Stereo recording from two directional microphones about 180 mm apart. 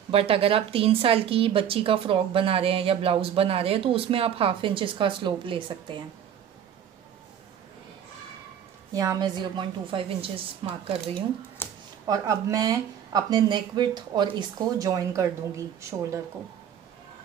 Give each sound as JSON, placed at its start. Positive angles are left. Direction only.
{"t": 0.1, "sound": "speech", "side_deg": -30}
{"t": 8.9, "sound": "a woman's voice", "side_deg": -20}
{"t": 11.6, "sound": "a sound", "side_deg": 10}
{"t": 12.1, "sound": "a woman's voice", "side_deg": -20}